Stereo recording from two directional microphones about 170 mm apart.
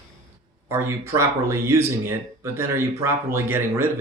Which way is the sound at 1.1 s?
15° right (ahead or behind).